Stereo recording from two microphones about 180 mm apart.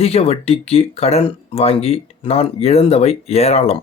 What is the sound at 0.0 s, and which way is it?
Speech, 35° left (ahead or behind).